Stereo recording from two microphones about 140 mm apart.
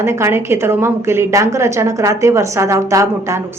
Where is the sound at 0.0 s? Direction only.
20° right (ahead or behind).